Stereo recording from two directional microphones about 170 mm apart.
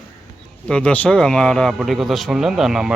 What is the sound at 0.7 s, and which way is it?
Speech, 5° left (ahead or behind).